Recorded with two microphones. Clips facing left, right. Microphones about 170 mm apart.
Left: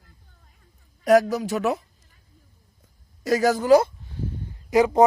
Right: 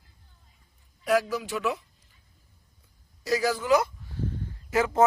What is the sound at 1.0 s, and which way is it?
Speech, 45° left (ahead or behind).